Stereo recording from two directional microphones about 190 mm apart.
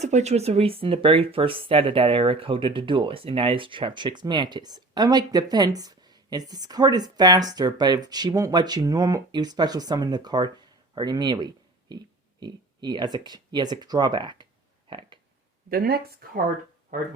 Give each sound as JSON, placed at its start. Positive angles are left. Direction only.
{"t": 0.0, "sound": "speech", "side_deg": -35}
{"t": 14.8, "sound": "a sound", "side_deg": -25}
{"t": 15.7, "sound": "speech", "side_deg": -55}